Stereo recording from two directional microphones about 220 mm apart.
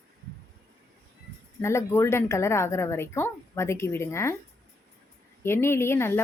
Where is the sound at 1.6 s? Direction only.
10° left (ahead or behind).